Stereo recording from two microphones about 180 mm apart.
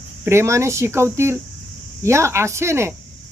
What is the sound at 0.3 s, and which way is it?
Speech, 15° right (ahead or behind).